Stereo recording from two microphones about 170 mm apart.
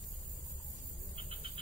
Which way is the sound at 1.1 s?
35° right (ahead or behind).